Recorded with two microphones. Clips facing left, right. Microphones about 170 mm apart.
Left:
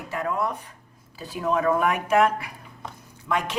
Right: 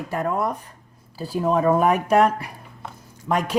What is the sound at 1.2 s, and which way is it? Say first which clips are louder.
Speech: right 4 dB; 35° right (ahead or behind).